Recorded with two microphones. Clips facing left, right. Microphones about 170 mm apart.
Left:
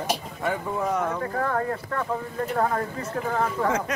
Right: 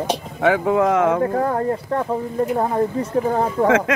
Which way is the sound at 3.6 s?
90° right.